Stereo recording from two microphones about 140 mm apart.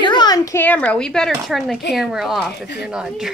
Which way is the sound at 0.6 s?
10° left (ahead or behind).